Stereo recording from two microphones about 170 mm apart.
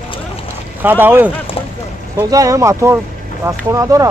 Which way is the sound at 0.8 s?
10° right (ahead or behind).